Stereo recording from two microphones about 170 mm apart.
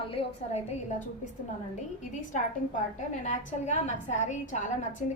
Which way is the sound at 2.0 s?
45° left (ahead or behind).